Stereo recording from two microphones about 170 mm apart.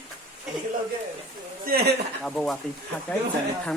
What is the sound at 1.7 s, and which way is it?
Speech, 65° right (ahead or behind).